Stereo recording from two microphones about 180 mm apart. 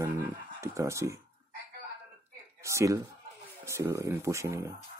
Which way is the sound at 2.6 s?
15° right (ahead or behind).